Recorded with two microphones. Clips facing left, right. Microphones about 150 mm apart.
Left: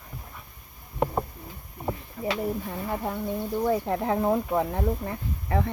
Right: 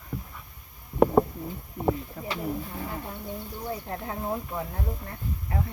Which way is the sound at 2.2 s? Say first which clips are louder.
Left 5 dB; 80° left.